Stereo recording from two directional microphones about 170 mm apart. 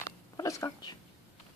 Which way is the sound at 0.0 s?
20° left (ahead or behind).